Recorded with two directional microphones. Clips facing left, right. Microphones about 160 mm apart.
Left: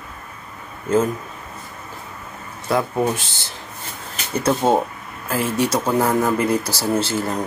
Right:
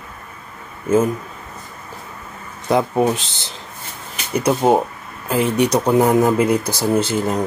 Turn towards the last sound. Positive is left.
turn(degrees=-20)  # may be behind; listen again after turning